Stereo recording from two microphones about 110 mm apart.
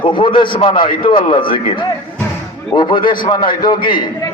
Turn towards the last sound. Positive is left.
turn(degrees=40)  # may be behind; listen again after turning